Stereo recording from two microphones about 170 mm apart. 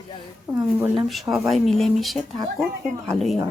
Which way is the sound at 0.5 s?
10° right (ahead or behind).